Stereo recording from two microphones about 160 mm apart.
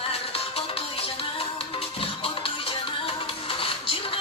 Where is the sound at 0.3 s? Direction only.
35° left (ahead or behind).